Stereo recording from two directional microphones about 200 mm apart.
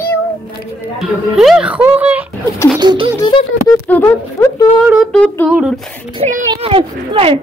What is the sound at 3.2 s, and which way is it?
Music, 20° left (ahead or behind).